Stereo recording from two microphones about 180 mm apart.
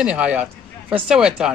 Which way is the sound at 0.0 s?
5° right (ahead or behind).